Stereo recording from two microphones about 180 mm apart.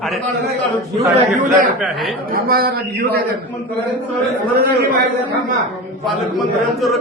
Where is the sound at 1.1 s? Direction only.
45° right (ahead or behind).